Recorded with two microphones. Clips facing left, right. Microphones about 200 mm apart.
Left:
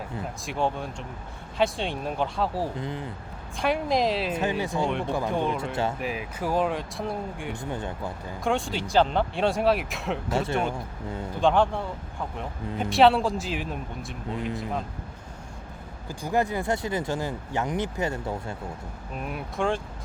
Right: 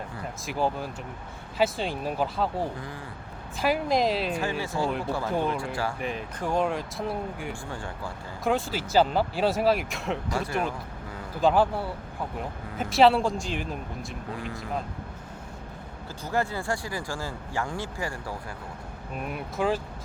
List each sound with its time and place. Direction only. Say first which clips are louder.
0.4 s speech: even; centre (ahead or behind)
2.7 s speech: left 5 dB; 20° left (ahead or behind)
3.6 s speech: even; centre (ahead or behind)
4.6 s speech: left 2 dB; 20° left (ahead or behind)
4.9 s speech: left 1 dB; 5° right (ahead or behind)
7.6 s speech: left 4 dB; 20° left (ahead or behind)
8.4 s speech: even; centre (ahead or behind)
10.3 s speech: left 5 dB; 25° left (ahead or behind)
11.3 s speech: even; 5° right (ahead or behind)
14.3 s speech: left 7 dB; 20° left (ahead or behind)
16.2 s speech: left 3 dB; 15° left (ahead or behind)
19.1 s speech: even; centre (ahead or behind)